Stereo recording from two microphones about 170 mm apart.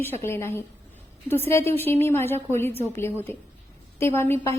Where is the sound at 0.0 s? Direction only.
15° left (ahead or behind).